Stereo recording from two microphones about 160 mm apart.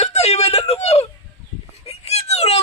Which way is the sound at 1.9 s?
40° left (ahead or behind).